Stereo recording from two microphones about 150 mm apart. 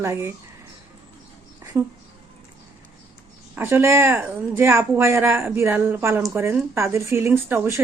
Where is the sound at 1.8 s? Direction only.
20° right (ahead or behind).